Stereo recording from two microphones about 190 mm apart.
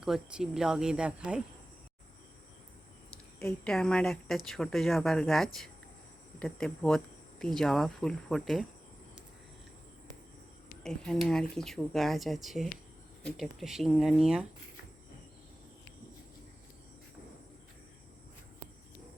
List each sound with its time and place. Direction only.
0.0 s speech: 5° right (ahead or behind)
3.4 s speech: 5° left (ahead or behind)
10.8 s speech: 5° left (ahead or behind)